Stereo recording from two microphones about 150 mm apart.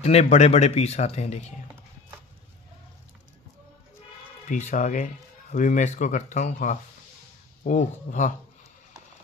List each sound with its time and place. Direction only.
0.0 s speech: 45° left (ahead or behind)
4.5 s speech: 60° left (ahead or behind)